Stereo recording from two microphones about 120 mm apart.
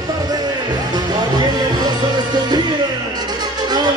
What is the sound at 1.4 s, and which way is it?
Music, 35° right (ahead or behind).